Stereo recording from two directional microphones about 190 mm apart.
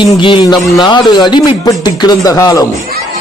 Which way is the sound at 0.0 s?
25° left (ahead or behind).